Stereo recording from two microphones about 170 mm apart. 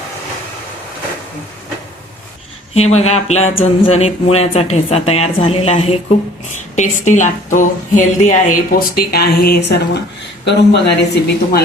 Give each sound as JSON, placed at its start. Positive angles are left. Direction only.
{"t": 2.7, "sound": "speech", "side_deg": 40}